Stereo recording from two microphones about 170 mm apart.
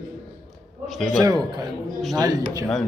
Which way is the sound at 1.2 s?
25° right (ahead or behind).